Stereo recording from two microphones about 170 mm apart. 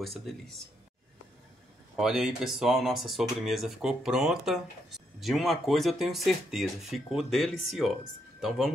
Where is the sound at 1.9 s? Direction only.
5° right (ahead or behind).